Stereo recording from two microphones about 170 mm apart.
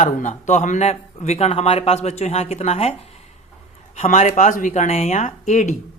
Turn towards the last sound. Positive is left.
turn(degrees=45)  # may be behind; listen again after turning